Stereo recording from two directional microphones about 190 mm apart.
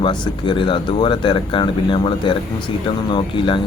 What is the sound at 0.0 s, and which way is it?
Speech, 25° left (ahead or behind).